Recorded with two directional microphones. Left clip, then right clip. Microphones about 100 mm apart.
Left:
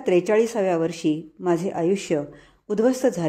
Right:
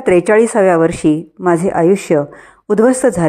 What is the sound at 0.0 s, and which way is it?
A woman's voice, 45° right (ahead or behind).